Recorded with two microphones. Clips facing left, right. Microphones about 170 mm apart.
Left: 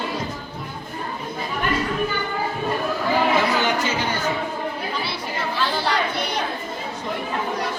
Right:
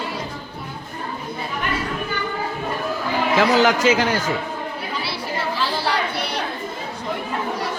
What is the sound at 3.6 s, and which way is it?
Speech, 90° right.